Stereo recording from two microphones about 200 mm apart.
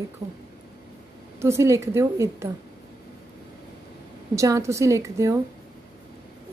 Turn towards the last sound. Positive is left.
turn(degrees=-15)  # may be behind; listen again after turning